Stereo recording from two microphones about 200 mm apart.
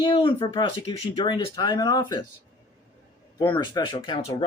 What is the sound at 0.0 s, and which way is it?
Speech, 25° left (ahead or behind).